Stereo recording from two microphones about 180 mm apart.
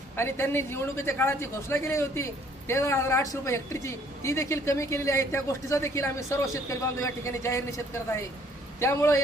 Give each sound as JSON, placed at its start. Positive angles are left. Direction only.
{"t": 0.2, "sound": "speech", "side_deg": 15}
{"t": 8.8, "sound": "speech", "side_deg": 15}